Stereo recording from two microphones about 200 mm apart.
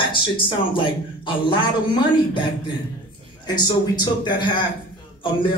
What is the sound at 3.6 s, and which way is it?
Speech, 20° left (ahead or behind).